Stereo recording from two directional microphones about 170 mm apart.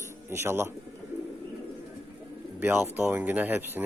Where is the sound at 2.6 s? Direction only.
10° right (ahead or behind).